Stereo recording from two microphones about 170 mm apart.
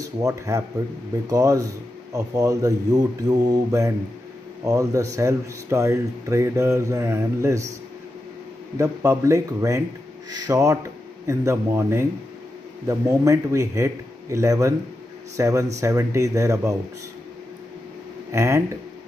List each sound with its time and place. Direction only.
0.0 s speech: 20° right (ahead or behind)
8.7 s speech: 20° right (ahead or behind)
18.3 s speech: 15° right (ahead or behind)